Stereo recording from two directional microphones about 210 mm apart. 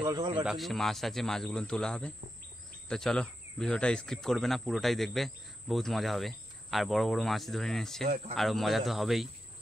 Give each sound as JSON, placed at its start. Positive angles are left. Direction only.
{"t": 0.0, "sound": "speech", "side_deg": -20}
{"t": 0.4, "sound": "speech", "side_deg": 0}